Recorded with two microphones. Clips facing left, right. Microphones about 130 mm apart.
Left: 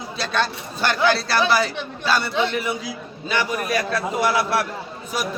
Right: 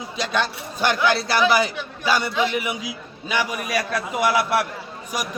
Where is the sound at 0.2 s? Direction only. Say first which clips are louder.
Even; 15° right (ahead or behind).